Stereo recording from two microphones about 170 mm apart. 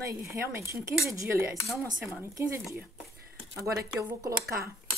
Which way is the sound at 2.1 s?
15° right (ahead or behind).